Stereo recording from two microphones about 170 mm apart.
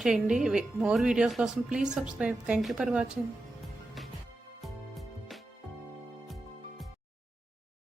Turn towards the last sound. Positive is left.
turn(degrees=0)  # may be behind; listen again after turning